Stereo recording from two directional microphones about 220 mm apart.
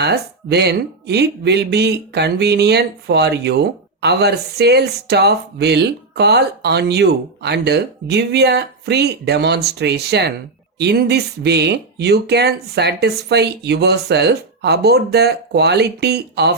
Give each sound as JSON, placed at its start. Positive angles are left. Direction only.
{"t": 0.0, "sound": "speech", "side_deg": -50}